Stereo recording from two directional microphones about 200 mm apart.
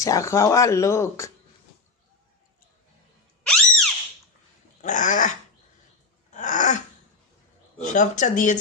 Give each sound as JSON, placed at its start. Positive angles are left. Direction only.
{"t": 0.0, "sound": "speech", "side_deg": 15}
{"t": 3.4, "sound": "a sound", "side_deg": 5}
{"t": 4.8, "sound": "speech", "side_deg": 40}
{"t": 6.3, "sound": "throat clearing", "side_deg": 40}
{"t": 7.8, "sound": "speech", "side_deg": 40}